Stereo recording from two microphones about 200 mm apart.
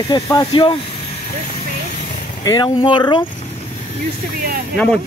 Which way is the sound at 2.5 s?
20° left (ahead or behind).